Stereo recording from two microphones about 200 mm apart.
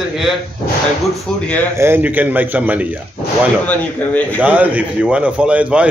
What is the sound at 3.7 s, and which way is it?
Speech, 5° left (ahead or behind).